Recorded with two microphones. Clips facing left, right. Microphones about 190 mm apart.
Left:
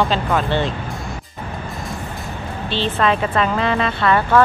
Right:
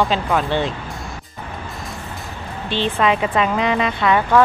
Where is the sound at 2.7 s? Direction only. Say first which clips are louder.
Even; 15° right (ahead or behind).